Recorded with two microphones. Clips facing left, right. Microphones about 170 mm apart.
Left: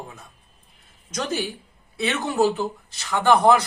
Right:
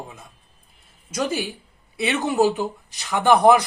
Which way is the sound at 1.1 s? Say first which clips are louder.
Right 3 dB; 5° right (ahead or behind).